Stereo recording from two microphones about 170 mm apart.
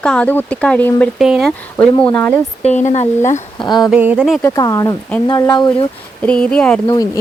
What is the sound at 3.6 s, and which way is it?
Speech, 25° left (ahead or behind).